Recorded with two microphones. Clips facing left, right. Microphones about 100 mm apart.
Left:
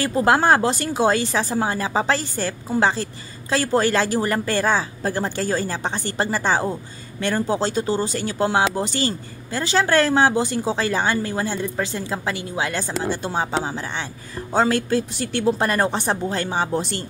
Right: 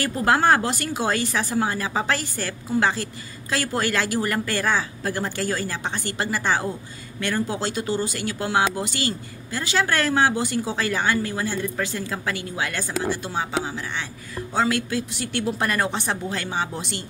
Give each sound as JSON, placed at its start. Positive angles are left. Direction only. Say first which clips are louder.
{"t": 0.0, "sound": "a woman's voice", "louder": "left 2 dB", "side_deg": 25}